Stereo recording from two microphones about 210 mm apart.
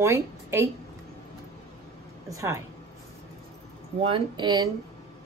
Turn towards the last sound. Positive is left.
turn(degrees=-20)  # may be behind; listen again after turning